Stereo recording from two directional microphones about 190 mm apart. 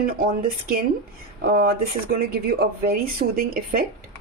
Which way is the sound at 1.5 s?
50° right (ahead or behind).